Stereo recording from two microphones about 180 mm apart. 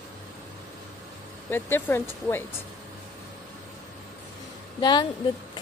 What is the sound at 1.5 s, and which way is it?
Speech, 10° left (ahead or behind).